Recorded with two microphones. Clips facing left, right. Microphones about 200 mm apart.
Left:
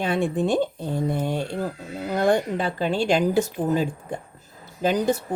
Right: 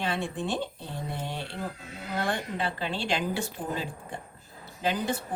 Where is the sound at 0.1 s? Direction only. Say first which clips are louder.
Left 9 dB; 45° left (ahead or behind).